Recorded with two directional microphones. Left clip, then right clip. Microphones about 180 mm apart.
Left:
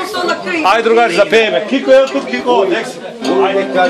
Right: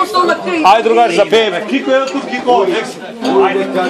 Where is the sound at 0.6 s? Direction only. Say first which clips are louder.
Right 1 dB; 20° left (ahead or behind).